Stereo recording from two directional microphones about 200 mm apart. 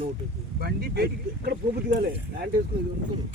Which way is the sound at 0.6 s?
50° right (ahead or behind).